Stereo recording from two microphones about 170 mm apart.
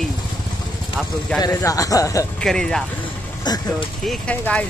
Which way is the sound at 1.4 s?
20° left (ahead or behind).